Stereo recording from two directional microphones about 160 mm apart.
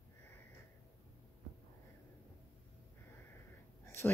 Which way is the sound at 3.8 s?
15° left (ahead or behind).